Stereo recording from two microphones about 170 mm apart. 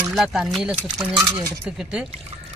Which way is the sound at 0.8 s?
20° right (ahead or behind).